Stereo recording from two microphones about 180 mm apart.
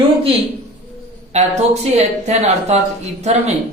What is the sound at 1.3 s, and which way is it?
A man's voice, 40° right (ahead or behind).